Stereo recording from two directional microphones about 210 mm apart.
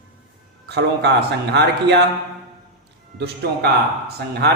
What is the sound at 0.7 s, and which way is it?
A man's voice, 50° right (ahead or behind).